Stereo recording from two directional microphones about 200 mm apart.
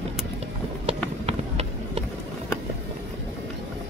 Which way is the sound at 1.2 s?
30° right (ahead or behind).